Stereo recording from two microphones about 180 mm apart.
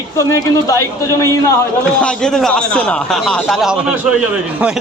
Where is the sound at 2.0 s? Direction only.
5° left (ahead or behind).